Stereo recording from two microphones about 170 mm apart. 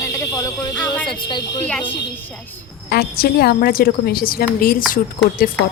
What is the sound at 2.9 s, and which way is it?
Speech, 65° left (ahead or behind).